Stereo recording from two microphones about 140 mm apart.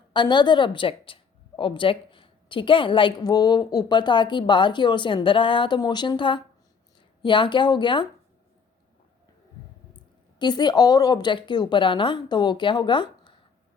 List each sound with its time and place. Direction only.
0.1 s speech: 35° left (ahead or behind)
10.3 s speech: 30° left (ahead or behind)